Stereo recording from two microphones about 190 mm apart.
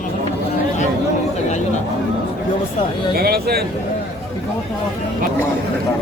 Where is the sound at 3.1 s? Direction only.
55° right (ahead or behind).